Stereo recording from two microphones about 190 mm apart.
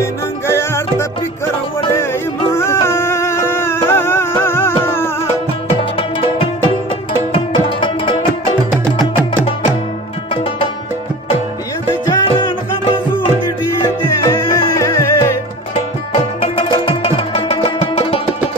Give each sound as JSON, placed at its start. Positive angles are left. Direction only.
{"t": 0.0, "sound": "music", "side_deg": 15}
{"t": 2.5, "sound": "music", "side_deg": 15}
{"t": 5.8, "sound": "music", "side_deg": 25}
{"t": 12.1, "sound": "music", "side_deg": 25}
{"t": 13.7, "sound": "music", "side_deg": 20}
{"t": 16.3, "sound": "music", "side_deg": 25}